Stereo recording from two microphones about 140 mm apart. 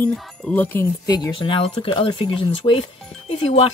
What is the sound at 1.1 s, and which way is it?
Speech, 30° left (ahead or behind).